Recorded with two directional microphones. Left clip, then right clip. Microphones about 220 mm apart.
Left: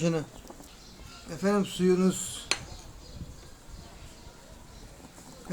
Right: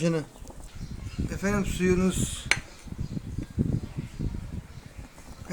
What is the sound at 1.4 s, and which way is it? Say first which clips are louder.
Speech: left 1 dB; 15° right (ahead or behind).